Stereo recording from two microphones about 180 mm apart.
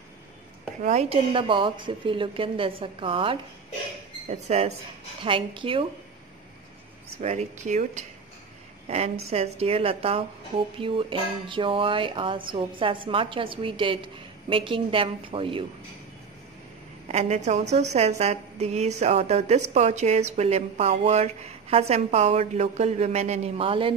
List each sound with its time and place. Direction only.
0.8 s speech: 35° right (ahead or behind)
7.2 s a woman's voice: 40° right (ahead or behind)
17.1 s speech: 35° right (ahead or behind)